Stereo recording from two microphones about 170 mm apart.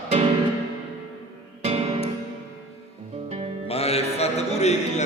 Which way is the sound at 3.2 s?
40° right (ahead or behind).